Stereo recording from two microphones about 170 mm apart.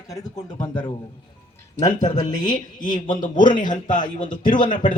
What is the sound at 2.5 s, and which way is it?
Speech, 50° left (ahead or behind).